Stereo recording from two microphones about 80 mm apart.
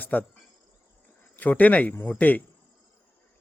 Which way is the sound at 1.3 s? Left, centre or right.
Left.